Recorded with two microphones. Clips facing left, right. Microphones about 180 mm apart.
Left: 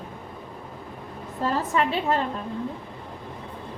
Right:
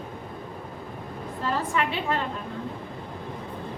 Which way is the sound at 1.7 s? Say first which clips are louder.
Left 3 dB; 40° left (ahead or behind).